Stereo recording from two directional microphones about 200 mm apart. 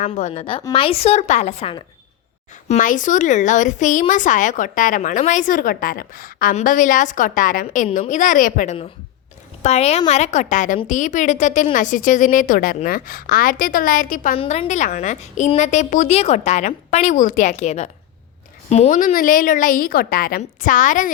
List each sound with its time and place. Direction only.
0.0 s a woman's voice: 35° left (ahead or behind)
14.3 s a woman's voice: 30° left (ahead or behind)